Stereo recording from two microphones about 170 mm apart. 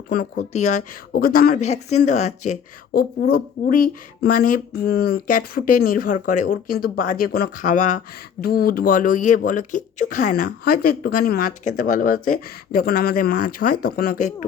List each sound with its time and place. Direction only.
0.1 s speech: 55° left (ahead or behind)
0.5 s speech: 45° left (ahead or behind)
1.1 s speech: 60° left (ahead or behind)
1.6 s speech: 40° left (ahead or behind)
2.9 s speech: 65° left (ahead or behind)